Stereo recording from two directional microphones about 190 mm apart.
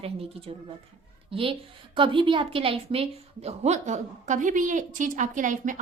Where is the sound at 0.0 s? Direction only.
30° right (ahead or behind).